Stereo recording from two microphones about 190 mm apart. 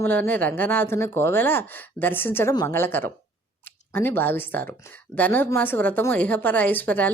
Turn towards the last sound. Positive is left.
turn(degrees=10)  # may be behind; listen again after turning